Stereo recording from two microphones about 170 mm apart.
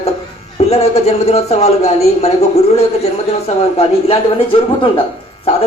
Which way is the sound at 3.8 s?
35° left (ahead or behind).